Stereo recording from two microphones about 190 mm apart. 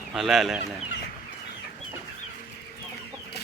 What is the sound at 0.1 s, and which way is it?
Speech, 5° right (ahead or behind).